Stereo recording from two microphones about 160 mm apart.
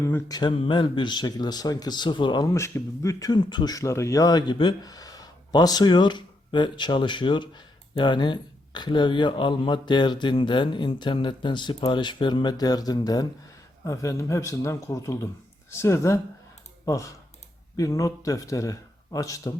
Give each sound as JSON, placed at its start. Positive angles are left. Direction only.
{"t": 0.0, "sound": "speech", "side_deg": 20}